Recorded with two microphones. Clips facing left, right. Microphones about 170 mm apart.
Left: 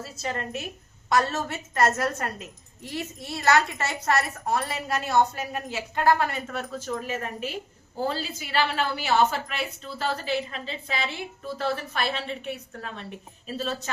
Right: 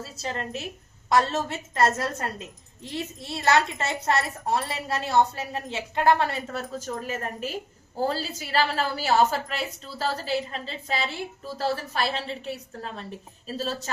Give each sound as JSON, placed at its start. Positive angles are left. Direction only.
{"t": 0.0, "sound": "a woman's voice", "side_deg": -30}